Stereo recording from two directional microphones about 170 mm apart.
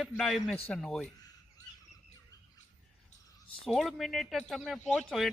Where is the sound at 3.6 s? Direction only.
Centre (ahead or behind).